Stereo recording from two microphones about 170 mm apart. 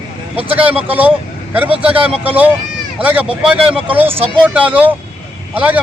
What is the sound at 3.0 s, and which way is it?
Speech, 10° right (ahead or behind).